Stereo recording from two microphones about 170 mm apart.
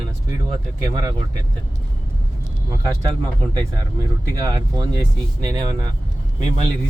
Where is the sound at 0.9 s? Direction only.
25° right (ahead or behind).